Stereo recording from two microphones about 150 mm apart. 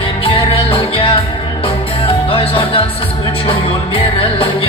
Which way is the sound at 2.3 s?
35° left (ahead or behind).